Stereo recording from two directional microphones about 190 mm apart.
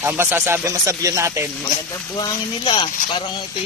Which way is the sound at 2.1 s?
25° left (ahead or behind).